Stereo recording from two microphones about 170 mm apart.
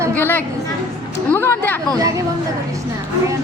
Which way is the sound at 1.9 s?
20° right (ahead or behind).